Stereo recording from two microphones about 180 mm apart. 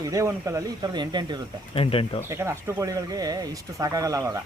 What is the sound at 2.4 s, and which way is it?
Speech, 15° right (ahead or behind).